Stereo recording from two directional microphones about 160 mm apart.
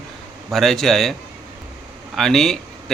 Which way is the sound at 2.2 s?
Centre (ahead or behind).